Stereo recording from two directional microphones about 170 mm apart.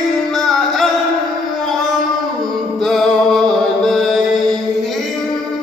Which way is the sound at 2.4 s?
Centre (ahead or behind).